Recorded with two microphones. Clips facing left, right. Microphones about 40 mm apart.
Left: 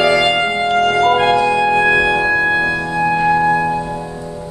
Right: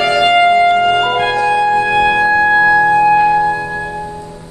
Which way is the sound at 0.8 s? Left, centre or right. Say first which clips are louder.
Right 1 dB; right.